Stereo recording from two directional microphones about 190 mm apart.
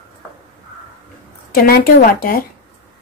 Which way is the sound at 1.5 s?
50° left (ahead or behind).